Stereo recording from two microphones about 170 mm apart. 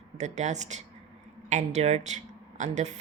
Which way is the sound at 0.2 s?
45° right (ahead or behind).